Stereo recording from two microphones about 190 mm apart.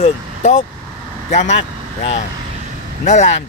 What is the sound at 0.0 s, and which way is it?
Speech, 35° left (ahead or behind).